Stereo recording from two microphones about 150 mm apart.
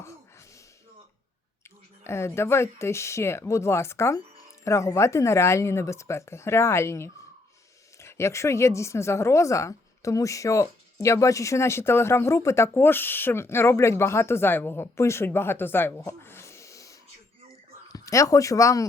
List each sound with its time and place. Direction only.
2.0 s a woman's voice: 15° left (ahead or behind)
17.9 s speech: 20° left (ahead or behind)